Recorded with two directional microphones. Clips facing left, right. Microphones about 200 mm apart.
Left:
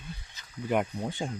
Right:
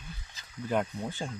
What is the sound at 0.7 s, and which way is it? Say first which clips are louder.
Speech: left 2 dB; 15° left (ahead or behind).